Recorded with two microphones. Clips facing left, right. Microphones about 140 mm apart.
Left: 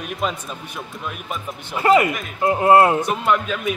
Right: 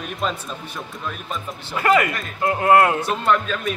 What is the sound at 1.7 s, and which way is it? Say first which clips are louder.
Speech: left 2 dB; 20° left (ahead or behind).